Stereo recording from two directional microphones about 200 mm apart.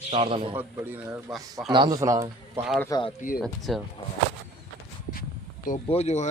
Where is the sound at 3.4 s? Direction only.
Centre (ahead or behind).